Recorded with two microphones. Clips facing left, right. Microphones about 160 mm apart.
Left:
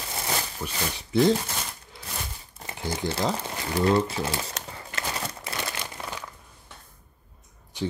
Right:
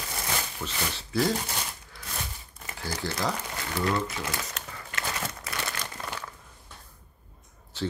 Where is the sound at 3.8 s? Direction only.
30° left (ahead or behind).